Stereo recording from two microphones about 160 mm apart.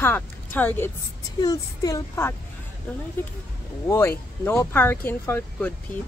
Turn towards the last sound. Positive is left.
turn(degrees=10)  # may be behind; listen again after turning